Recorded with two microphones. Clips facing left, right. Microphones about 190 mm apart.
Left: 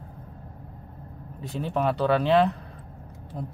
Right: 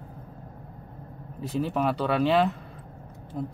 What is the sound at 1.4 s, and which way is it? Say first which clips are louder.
Speech: even; centre (ahead or behind).